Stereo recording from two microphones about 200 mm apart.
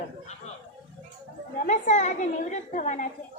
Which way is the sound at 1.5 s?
40° left (ahead or behind).